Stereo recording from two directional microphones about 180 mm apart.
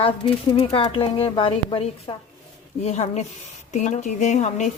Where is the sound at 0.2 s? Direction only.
30° left (ahead or behind).